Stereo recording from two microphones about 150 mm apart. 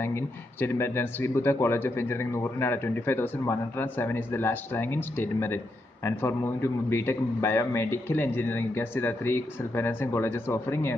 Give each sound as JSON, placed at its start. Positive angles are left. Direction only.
{"t": 0.0, "sound": "speech", "side_deg": 15}